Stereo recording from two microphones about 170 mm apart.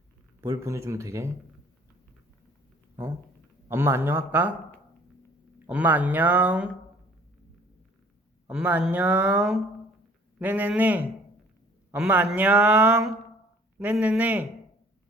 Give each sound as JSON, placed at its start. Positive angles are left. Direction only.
{"t": 0.4, "sound": "speech", "side_deg": -20}
{"t": 3.7, "sound": "speech", "side_deg": -15}
{"t": 5.6, "sound": "speech", "side_deg": -10}
{"t": 8.4, "sound": "speech", "side_deg": -5}